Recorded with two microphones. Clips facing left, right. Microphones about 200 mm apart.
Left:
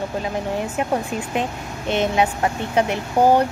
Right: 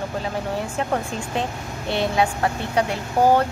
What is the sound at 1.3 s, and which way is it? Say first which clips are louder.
A woman's voice: left 2 dB; 20° left (ahead or behind).